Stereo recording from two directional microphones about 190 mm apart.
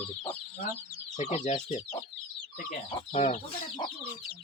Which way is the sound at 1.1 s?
35° left (ahead or behind).